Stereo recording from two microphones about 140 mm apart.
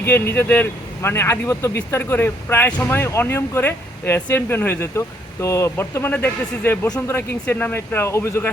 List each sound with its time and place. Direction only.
0.0 s speech: 15° left (ahead or behind)